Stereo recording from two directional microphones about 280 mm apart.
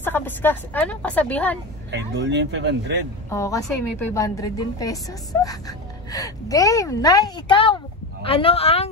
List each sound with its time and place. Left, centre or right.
0.0 s a woman's voice: centre
1.9 s speech: right
3.3 s speech: centre